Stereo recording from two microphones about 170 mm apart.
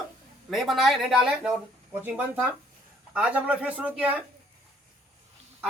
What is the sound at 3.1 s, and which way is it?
A man's voice, 5° right (ahead or behind).